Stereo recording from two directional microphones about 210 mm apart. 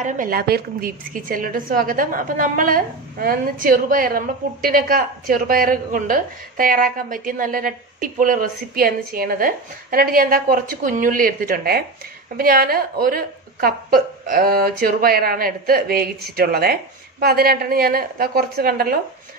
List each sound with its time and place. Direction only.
0.0 s a woman's voice: 40° right (ahead or behind)